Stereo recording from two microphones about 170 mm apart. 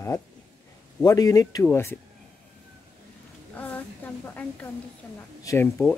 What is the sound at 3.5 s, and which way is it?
A woman's voice, 10° left (ahead or behind).